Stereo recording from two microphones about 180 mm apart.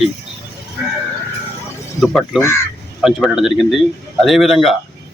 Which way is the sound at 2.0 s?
Centre (ahead or behind).